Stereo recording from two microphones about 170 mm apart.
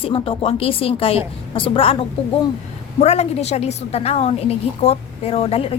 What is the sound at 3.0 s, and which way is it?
A woman's voice, 40° left (ahead or behind).